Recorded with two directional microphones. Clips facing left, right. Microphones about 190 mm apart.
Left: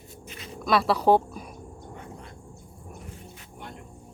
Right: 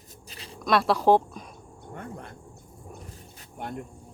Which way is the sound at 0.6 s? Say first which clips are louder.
Even; centre (ahead or behind).